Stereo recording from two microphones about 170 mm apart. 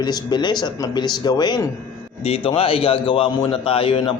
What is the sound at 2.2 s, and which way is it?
Speech, 35° left (ahead or behind).